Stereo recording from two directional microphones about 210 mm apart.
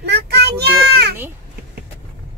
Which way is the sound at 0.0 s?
50° right (ahead or behind).